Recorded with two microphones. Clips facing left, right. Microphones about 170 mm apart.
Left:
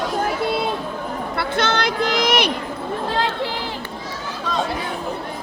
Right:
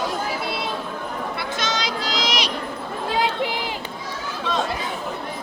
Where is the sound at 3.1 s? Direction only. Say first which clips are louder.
Right 2 dB; 15° right (ahead or behind).